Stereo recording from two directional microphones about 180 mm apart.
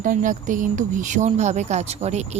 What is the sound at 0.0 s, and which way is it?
Speech, 45° right (ahead or behind).